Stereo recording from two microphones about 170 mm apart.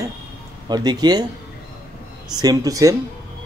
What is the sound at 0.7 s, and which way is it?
Speech, 25° right (ahead or behind).